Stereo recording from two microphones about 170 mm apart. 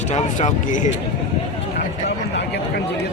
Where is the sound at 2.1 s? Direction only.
80° left.